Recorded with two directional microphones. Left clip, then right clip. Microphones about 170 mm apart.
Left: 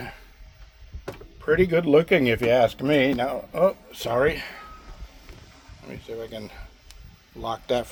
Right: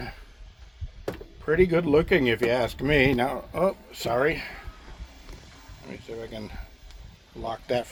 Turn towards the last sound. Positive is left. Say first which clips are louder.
# left 2 dB
turn(degrees=10)  # may be behind; listen again after turning